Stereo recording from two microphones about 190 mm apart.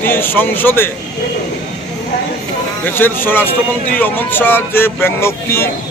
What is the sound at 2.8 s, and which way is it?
Speech, 10° left (ahead or behind).